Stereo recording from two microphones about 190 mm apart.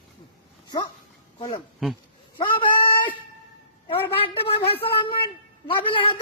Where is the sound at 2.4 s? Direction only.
25° left (ahead or behind).